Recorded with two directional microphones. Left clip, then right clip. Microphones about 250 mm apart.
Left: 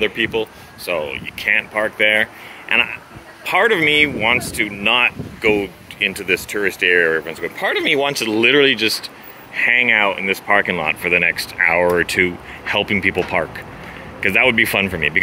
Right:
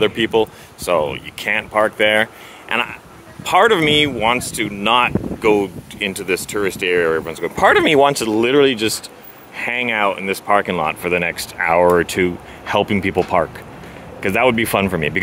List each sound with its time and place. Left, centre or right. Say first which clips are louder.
0.0 s speech: right 3 dB; right
3.4 s speech: right 2 dB; centre